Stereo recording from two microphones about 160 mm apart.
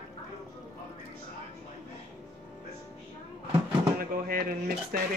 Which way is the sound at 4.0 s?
70° right (ahead or behind).